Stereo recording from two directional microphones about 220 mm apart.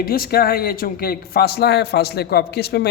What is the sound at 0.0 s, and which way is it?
Speech, 45° left (ahead or behind).